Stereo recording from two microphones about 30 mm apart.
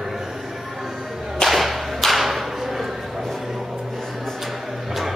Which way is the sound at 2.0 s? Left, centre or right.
Centre.